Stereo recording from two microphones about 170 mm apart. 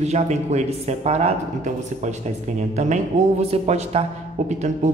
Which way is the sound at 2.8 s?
45° right (ahead or behind).